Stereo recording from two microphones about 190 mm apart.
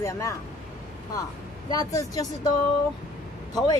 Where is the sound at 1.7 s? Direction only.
20° left (ahead or behind).